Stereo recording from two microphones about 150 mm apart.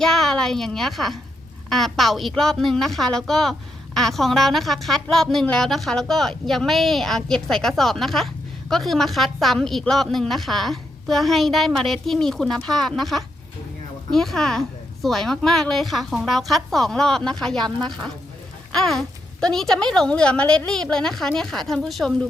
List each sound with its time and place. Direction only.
0.0 s a woman's voice: centre (ahead or behind)
18.7 s a woman's voice: centre (ahead or behind)